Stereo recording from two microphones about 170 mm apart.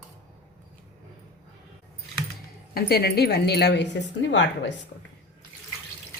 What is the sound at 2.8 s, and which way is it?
Speech, 65° left (ahead or behind).